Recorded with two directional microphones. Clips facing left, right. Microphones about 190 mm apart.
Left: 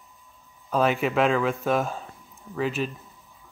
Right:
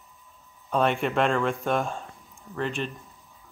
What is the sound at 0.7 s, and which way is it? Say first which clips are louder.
Speech: left 1 dB; centre (ahead or behind).